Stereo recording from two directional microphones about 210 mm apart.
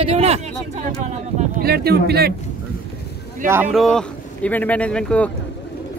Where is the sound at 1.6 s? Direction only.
50° right (ahead or behind).